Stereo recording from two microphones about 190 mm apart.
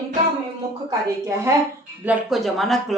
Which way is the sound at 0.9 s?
15° right (ahead or behind).